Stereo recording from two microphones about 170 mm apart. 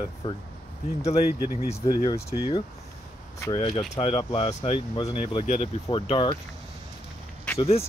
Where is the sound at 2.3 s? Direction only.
35° left (ahead or behind).